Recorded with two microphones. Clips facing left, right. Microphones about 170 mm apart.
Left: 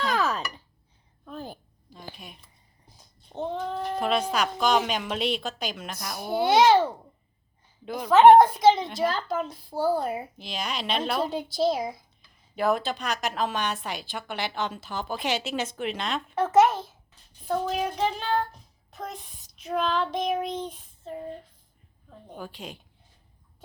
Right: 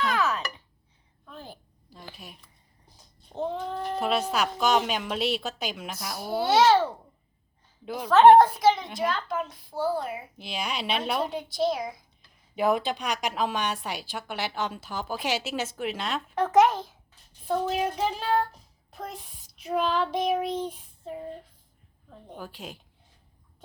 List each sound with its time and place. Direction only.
0.0 s a sound: 35° left (ahead or behind)
1.2 s a sound: 45° left (ahead or behind)
2.1 s a woman's voice: 5° right (ahead or behind)
6.1 s a child's voice: 20° left (ahead or behind)
7.9 s a woman's voice: 10° right (ahead or behind)
8.4 s a woman's voice: 20° left (ahead or behind)
9.0 s a child's voice: 35° left (ahead or behind)
10.3 s a woman's voice: 10° right (ahead or behind)
11.5 s a woman's voice: 30° left (ahead or behind)
12.5 s a woman's voice: 15° right (ahead or behind); by 16.6 s 5° left (ahead or behind)
17.4 s child singing: centre (ahead or behind)
19.6 s a woman's voice: 5° right (ahead or behind)